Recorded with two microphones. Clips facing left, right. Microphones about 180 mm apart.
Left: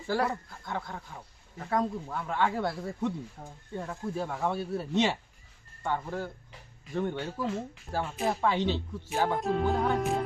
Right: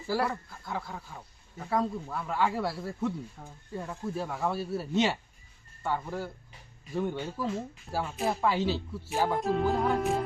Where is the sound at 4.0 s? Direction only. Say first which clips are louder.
Even; centre (ahead or behind).